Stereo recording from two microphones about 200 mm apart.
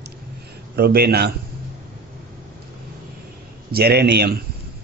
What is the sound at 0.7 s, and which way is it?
Speech, 50° right (ahead or behind).